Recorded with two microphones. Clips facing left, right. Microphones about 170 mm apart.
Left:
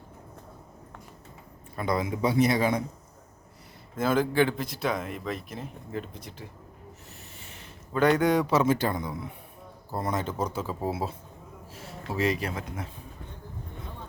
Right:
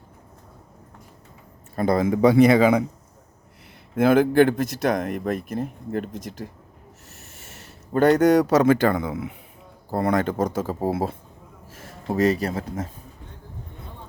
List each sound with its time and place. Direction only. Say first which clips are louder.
1.7 s speech: right 8 dB; 45° right (ahead or behind)
2.2 s speech: right 9 dB; 90° right
3.9 s speech: right 8 dB; 60° right (ahead or behind)
7.2 s a sound: right 2 dB; 45° right (ahead or behind)
8.6 s speech: right 7 dB; 60° right (ahead or behind); by 12.9 s 40° right (ahead or behind)